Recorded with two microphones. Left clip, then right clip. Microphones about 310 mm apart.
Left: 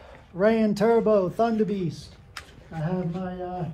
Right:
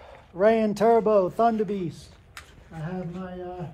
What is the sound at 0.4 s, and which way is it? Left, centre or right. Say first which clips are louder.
Speech: right 1 dB; right.